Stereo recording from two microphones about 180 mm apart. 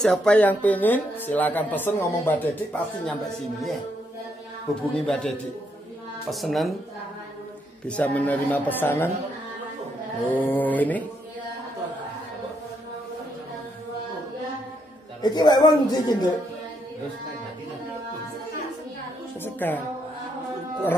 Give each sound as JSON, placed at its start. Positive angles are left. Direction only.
{"t": 0.0, "sound": "speech", "side_deg": 5}
{"t": 4.9, "sound": "a woman's voice", "side_deg": 5}
{"t": 6.3, "sound": "a woman's voice", "side_deg": 0}
{"t": 7.8, "sound": "speech", "side_deg": 5}
{"t": 10.2, "sound": "speech", "side_deg": 10}
{"t": 15.2, "sound": "speech", "side_deg": 25}
{"t": 19.4, "sound": "speech", "side_deg": 10}